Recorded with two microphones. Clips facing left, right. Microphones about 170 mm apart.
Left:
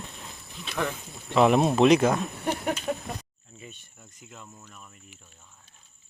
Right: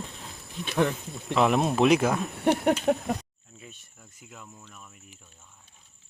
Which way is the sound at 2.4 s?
65° right (ahead or behind).